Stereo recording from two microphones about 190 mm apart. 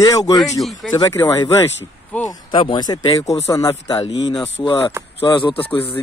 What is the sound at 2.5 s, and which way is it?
Speech, 25° left (ahead or behind).